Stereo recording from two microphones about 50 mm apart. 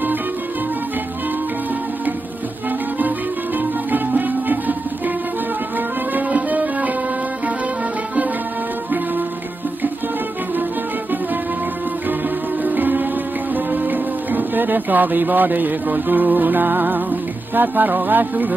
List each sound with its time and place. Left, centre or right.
3.9 s music: right
6.1 s music: right
12.6 s music: right